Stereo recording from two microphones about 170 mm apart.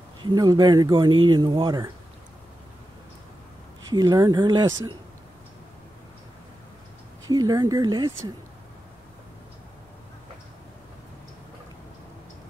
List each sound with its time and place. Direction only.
0.2 s speech: 25° right (ahead or behind)
3.9 s speech: 25° right (ahead or behind)
7.2 s speech: 20° right (ahead or behind)